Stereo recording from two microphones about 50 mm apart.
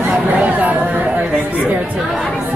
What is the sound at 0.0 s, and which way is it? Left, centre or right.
Chatter, right.